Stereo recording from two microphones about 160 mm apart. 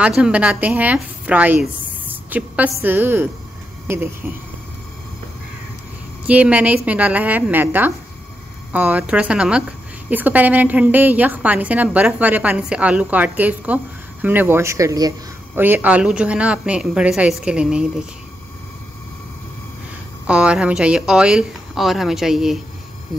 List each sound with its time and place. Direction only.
0.0 s a woman's voice: 5° right (ahead or behind)
6.2 s a woman's voice: 10° right (ahead or behind)
15.5 s a woman's voice: 10° right (ahead or behind)
20.2 s speech: 5° right (ahead or behind)